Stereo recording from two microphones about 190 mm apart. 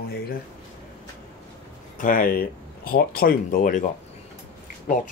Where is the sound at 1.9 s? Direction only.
45° left (ahead or behind).